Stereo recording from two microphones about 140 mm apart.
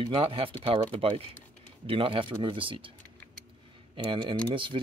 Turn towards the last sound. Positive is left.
turn(degrees=-35)  # may be behind; listen again after turning